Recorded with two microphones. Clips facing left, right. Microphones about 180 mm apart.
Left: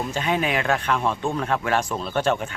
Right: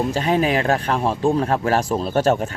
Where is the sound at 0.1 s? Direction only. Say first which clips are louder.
Right 5 dB; 35° right (ahead or behind).